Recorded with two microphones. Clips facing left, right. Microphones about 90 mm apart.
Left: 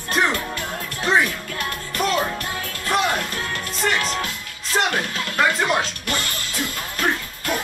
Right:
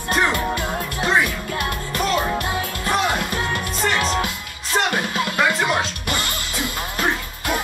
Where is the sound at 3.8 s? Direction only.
Centre (ahead or behind).